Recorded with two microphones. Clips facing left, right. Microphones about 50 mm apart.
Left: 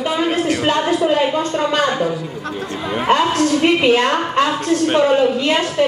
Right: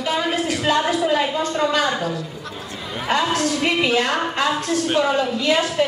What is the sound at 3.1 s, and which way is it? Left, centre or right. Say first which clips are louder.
A woman's voice: left 5 dB; left.